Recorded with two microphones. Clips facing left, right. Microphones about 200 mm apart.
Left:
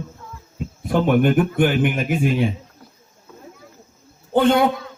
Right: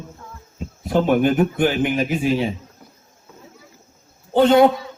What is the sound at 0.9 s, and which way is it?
Speech, 55° left (ahead or behind).